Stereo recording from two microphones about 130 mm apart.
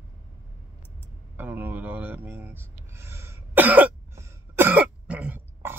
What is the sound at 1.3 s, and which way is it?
Speech, 15° right (ahead or behind).